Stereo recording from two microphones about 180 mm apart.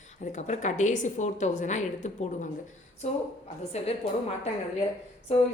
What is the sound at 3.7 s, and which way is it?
Speech, 35° left (ahead or behind).